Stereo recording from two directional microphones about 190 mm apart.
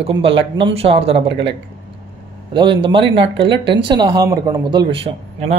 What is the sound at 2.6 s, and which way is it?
Speech, 25° right (ahead or behind).